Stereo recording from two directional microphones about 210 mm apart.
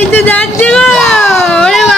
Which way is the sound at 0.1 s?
10° left (ahead or behind).